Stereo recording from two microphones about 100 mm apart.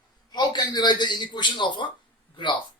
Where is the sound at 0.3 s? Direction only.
45° left (ahead or behind).